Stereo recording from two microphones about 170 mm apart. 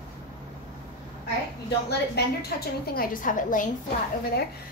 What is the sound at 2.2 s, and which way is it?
Speech, 70° left (ahead or behind).